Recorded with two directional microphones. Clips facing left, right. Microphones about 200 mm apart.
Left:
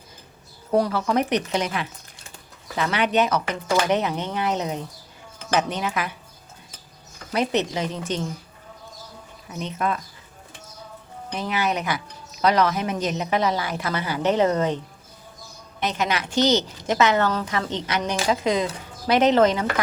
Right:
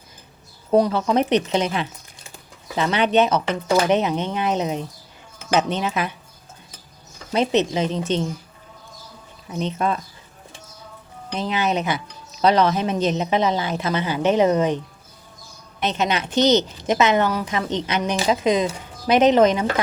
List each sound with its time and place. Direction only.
0.7 s a woman's voice: 25° right (ahead or behind)
7.3 s a woman's voice: 20° right (ahead or behind)
9.5 s a woman's voice: 30° right (ahead or behind)
11.3 s a woman's voice: 20° right (ahead or behind)
15.8 s a woman's voice: 25° right (ahead or behind)